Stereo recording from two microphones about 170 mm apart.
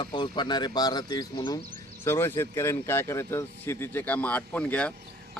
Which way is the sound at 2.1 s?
15° left (ahead or behind).